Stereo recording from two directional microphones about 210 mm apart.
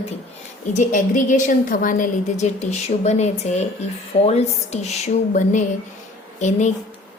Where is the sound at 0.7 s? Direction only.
35° left (ahead or behind).